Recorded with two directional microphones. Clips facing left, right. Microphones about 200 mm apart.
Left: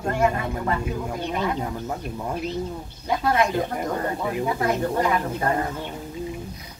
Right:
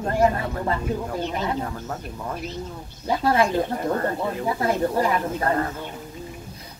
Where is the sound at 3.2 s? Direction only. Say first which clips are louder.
Right 2 dB; 30° right (ahead or behind).